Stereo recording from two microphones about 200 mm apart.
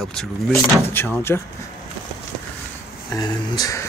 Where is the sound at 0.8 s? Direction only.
10° left (ahead or behind).